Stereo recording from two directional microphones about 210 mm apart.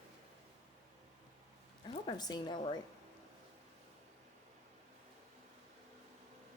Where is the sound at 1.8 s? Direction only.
20° left (ahead or behind).